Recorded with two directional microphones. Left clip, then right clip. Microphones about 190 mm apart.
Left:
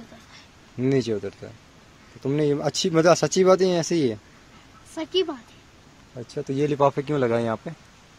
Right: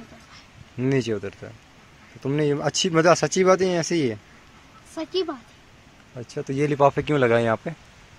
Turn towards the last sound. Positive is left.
turn(degrees=0)  # may be behind; listen again after turning